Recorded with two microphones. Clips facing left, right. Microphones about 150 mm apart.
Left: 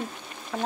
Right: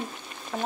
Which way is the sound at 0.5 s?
10° right (ahead or behind).